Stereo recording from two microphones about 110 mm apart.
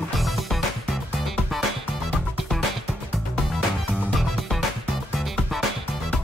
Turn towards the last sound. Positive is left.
turn(degrees=0)  # may be behind; listen again after turning